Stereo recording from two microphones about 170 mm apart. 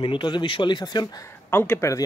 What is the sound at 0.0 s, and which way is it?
Speech, 30° left (ahead or behind).